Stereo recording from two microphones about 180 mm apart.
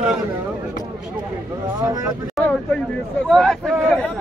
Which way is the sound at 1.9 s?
20° right (ahead or behind).